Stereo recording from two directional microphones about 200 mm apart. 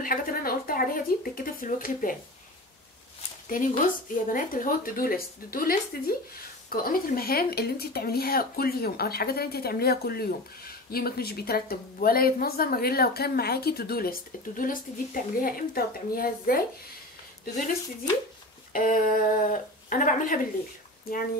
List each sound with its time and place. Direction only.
0.0 s speech: 45° left (ahead or behind)
3.4 s speech: 40° left (ahead or behind)
18.7 s speech: 45° left (ahead or behind)